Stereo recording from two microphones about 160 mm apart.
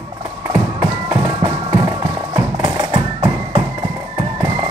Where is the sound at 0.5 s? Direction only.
25° right (ahead or behind).